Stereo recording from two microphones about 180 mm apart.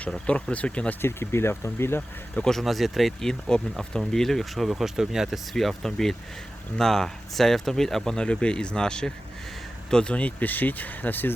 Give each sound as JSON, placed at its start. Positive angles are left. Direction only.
{"t": 0.0, "sound": "speech", "side_deg": 5}